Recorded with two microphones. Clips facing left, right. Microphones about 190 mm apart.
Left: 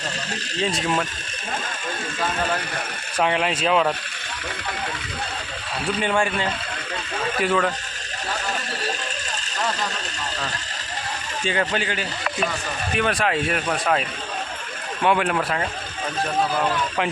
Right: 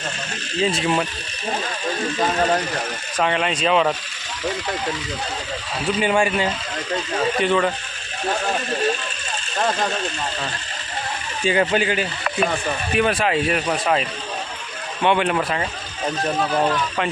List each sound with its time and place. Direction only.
0.6 s speech: 5° right (ahead or behind)
2.1 s speech: 40° right (ahead or behind)
3.2 s speech: 5° left (ahead or behind)
5.8 s speech: 10° right (ahead or behind)
7.4 s speech: centre (ahead or behind)
11.4 s speech: 15° right (ahead or behind)
15.0 s speech: centre (ahead or behind)